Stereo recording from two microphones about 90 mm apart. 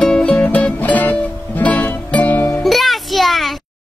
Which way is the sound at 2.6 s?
Centre (ahead or behind).